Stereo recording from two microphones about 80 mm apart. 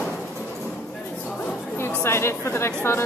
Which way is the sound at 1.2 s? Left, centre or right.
Left.